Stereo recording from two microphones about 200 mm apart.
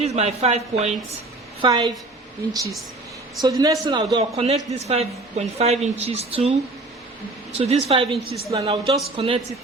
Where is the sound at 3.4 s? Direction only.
20° right (ahead or behind).